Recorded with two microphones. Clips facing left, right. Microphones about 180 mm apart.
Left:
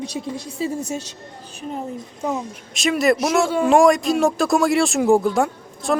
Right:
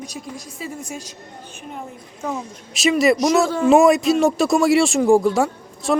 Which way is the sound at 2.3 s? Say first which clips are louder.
Left 2 dB; centre (ahead or behind).